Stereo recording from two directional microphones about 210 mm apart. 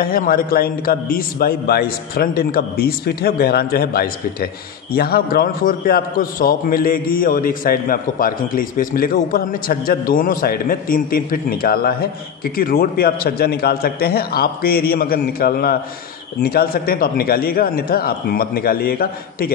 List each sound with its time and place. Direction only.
0.0 s a man's voice: 45° left (ahead or behind)